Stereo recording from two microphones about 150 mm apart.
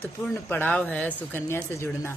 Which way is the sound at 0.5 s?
10° left (ahead or behind).